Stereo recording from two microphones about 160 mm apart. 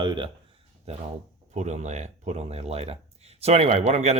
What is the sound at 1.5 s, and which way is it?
Speech, 45° right (ahead or behind).